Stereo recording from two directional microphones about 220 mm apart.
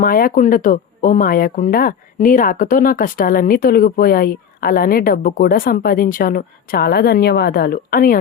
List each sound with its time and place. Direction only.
0.0 s speech: 40° left (ahead or behind)